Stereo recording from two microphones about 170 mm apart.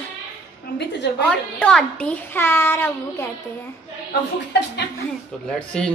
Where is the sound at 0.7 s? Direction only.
90° left.